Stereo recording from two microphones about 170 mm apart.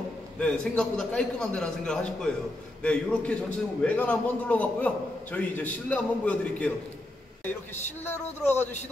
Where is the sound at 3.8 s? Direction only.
10° left (ahead or behind).